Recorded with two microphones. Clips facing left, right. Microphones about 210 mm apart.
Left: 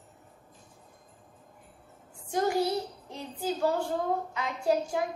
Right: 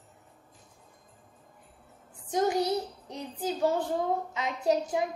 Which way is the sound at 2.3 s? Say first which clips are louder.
Right 1 dB; 20° right (ahead or behind).